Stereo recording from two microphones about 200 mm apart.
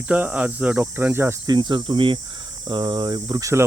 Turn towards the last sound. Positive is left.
turn(degrees=-15)  # may be behind; listen again after turning